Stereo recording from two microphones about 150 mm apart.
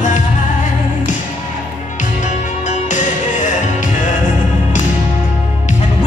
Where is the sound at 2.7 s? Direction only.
55° left (ahead or behind).